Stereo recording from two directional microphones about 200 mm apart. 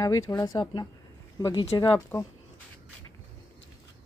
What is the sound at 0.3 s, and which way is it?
Speech, 20° left (ahead or behind).